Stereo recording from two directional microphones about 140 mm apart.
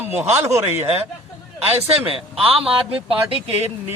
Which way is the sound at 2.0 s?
40° right (ahead or behind).